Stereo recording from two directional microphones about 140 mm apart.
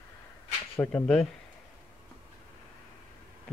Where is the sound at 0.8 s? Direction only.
20° left (ahead or behind).